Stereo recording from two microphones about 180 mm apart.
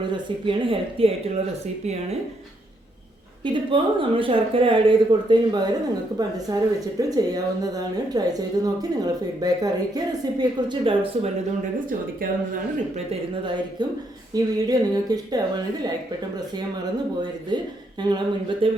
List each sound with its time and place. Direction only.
0.1 s a woman's voice: 25° right (ahead or behind)
3.4 s a woman's voice: 30° right (ahead or behind)
12.2 s a woman's voice: 50° right (ahead or behind)
14.3 s a woman's voice: 20° right (ahead or behind)
17.5 s a woman's voice: 25° right (ahead or behind)